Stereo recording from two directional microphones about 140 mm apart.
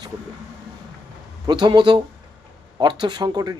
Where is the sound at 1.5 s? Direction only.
30° right (ahead or behind).